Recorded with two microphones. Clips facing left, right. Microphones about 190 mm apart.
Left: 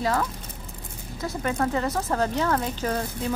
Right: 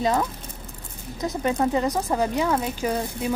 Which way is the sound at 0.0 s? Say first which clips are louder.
Right 2 dB; 20° right (ahead or behind).